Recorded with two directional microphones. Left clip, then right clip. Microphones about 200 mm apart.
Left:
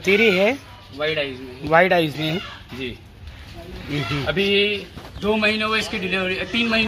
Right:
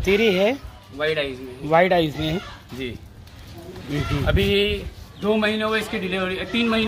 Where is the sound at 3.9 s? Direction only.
5° right (ahead or behind).